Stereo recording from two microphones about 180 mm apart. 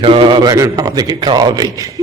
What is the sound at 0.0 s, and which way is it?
A man's voice, 30° right (ahead or behind).